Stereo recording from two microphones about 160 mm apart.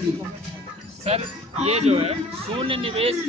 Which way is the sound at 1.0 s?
40° right (ahead or behind).